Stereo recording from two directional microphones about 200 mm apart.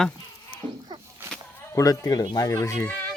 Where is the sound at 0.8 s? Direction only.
20° right (ahead or behind).